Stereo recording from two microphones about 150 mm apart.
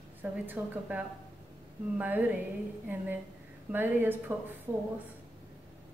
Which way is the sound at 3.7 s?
15° right (ahead or behind).